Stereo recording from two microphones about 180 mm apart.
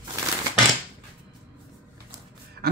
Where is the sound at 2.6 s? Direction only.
60° right (ahead or behind).